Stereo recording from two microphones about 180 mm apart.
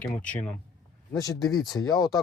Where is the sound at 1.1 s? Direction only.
20° left (ahead or behind).